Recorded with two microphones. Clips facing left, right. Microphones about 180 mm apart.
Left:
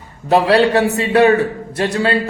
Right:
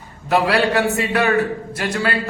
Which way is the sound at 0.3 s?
30° left (ahead or behind).